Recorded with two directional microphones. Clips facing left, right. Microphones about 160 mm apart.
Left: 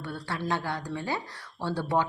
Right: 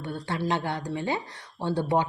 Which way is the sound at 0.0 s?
15° right (ahead or behind).